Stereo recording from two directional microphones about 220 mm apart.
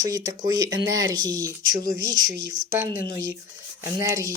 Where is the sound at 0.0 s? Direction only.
20° right (ahead or behind).